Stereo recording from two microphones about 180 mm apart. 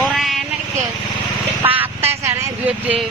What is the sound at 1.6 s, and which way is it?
Vehicle, 10° right (ahead or behind).